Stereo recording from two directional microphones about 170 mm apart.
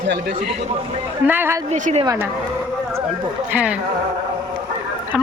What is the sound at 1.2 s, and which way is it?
Speech, 10° right (ahead or behind).